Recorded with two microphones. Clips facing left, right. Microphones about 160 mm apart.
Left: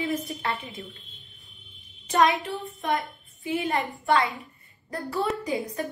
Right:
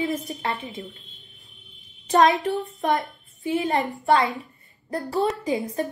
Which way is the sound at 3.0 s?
45° right (ahead or behind).